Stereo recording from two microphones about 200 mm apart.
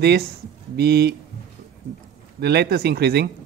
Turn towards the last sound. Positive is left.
turn(degrees=-55)  # may be behind; listen again after turning